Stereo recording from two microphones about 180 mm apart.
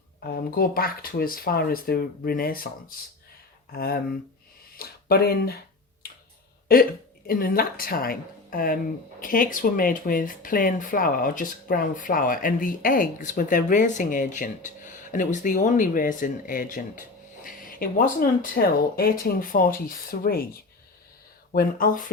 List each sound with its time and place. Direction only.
0.3 s speech: 55° left (ahead or behind)
3.7 s speech: 55° left (ahead or behind)
7.3 s speech: 55° left (ahead or behind)
17.4 s a sound: 50° left (ahead or behind)
18.5 s speech: 55° left (ahead or behind)